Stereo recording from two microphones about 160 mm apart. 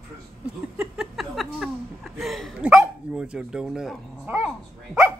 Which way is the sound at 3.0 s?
5° right (ahead or behind).